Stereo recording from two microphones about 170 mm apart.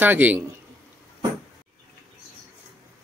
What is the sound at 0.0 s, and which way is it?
Speech, 10° right (ahead or behind).